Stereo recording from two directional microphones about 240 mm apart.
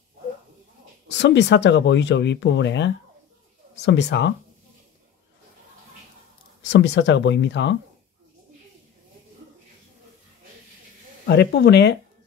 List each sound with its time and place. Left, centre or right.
1.0 s speech: left
6.7 s speech: left
11.2 s speech: left